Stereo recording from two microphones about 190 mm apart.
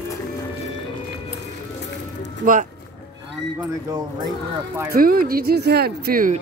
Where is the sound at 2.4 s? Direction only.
40° right (ahead or behind).